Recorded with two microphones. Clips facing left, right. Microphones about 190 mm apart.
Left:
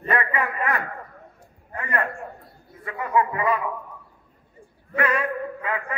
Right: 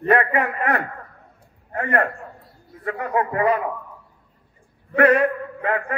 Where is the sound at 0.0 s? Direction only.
60° right (ahead or behind).